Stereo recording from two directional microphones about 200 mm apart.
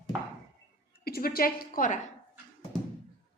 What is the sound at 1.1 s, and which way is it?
Speech, 50° left (ahead or behind).